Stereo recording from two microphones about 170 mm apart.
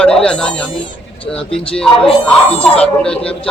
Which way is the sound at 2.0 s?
35° left (ahead or behind).